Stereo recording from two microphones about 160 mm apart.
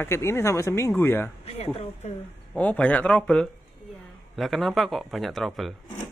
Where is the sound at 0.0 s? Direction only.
15° left (ahead or behind).